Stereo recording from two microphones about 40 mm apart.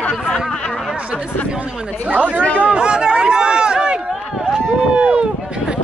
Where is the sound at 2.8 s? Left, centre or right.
Right.